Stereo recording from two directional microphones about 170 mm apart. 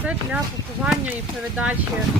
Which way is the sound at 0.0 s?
10° right (ahead or behind).